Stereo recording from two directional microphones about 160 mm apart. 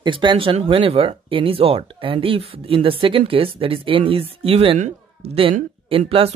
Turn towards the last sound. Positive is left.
turn(degrees=-35)  # may be behind; listen again after turning